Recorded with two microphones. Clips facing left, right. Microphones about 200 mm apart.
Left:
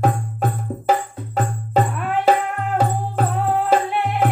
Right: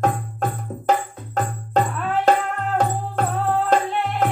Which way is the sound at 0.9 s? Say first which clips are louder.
Left 1 dB; 10° left (ahead or behind).